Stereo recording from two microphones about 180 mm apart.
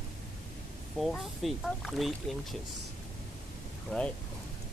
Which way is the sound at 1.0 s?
Centre (ahead or behind).